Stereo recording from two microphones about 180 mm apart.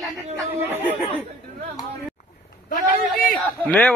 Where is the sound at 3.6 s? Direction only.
10° left (ahead or behind).